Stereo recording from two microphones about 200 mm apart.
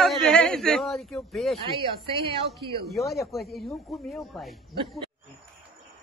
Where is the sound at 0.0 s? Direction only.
Centre (ahead or behind).